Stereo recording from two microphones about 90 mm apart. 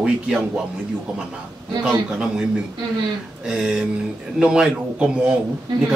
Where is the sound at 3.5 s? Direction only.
5° right (ahead or behind).